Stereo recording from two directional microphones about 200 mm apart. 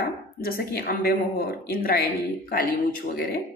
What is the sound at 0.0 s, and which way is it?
Speech, 50° left (ahead or behind).